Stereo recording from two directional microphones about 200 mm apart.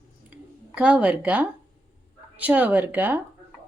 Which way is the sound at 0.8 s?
5° right (ahead or behind).